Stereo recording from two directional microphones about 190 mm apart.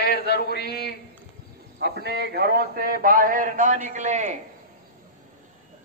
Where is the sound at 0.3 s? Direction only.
55° left (ahead or behind).